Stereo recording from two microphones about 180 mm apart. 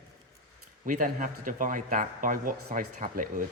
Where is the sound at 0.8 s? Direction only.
45° right (ahead or behind).